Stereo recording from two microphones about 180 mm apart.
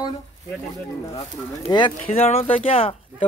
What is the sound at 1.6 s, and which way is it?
Speech, 25° left (ahead or behind).